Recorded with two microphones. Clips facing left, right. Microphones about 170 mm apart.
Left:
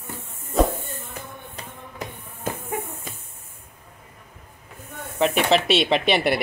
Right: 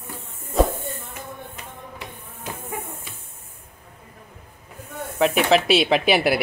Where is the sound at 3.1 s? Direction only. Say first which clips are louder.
Left 4 dB; 45° left (ahead or behind).